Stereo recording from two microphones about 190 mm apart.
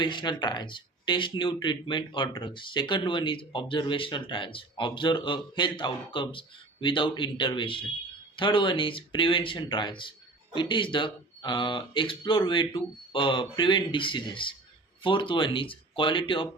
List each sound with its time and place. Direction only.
0.0 s speech: 25° left (ahead or behind)